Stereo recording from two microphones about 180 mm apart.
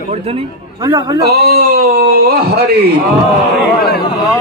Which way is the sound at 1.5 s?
55° right (ahead or behind).